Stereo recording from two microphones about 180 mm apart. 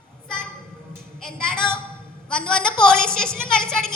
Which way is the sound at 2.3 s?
5° left (ahead or behind).